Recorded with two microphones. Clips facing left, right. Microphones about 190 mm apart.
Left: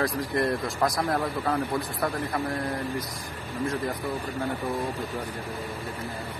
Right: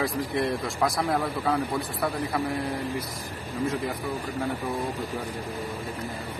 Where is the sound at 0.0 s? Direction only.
Centre (ahead or behind).